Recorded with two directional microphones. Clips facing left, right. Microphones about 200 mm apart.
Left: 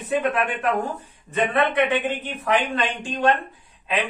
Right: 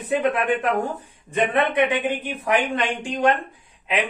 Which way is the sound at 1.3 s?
15° right (ahead or behind).